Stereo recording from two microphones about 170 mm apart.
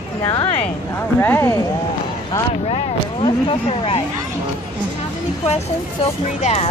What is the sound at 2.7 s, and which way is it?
Speech, 30° left (ahead or behind).